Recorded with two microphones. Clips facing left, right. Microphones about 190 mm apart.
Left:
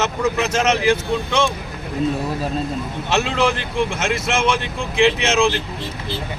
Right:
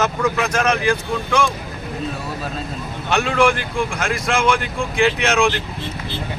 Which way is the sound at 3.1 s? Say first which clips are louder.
Right 2 dB; 25° left (ahead or behind).